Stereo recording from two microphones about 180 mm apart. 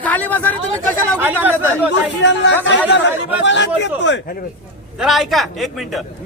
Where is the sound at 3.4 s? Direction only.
85° left.